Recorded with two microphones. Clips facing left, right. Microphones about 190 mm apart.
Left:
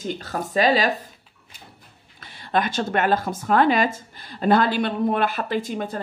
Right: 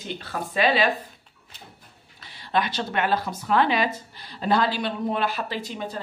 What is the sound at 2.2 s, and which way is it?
Speech, 50° left (ahead or behind).